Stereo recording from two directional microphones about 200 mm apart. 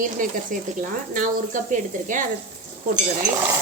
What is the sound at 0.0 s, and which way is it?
Speech, 40° right (ahead or behind).